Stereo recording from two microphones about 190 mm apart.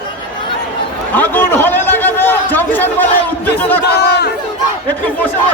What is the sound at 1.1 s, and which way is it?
A man's voice, 10° left (ahead or behind).